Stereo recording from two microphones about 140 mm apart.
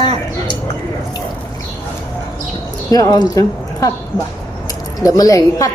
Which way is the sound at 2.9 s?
25° left (ahead or behind).